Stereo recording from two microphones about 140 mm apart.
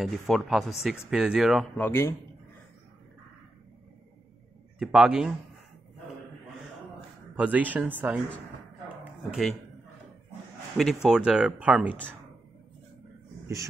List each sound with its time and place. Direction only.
0.0 s speech: centre (ahead or behind)
1.8 s a man's voice: 15° left (ahead or behind)
4.7 s speech: 5° right (ahead or behind)
7.3 s speech: 10° right (ahead or behind)
8.8 s a sound: 5° right (ahead or behind)
10.8 s speech: centre (ahead or behind)